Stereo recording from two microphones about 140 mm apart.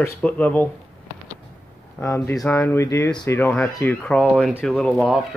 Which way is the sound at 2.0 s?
20° left (ahead or behind).